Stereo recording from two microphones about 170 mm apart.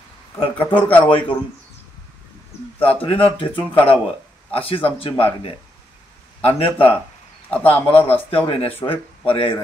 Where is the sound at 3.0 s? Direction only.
35° left (ahead or behind).